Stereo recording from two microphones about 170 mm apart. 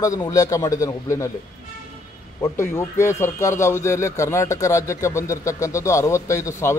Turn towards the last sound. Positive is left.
turn(degrees=15)  # may be behind; listen again after turning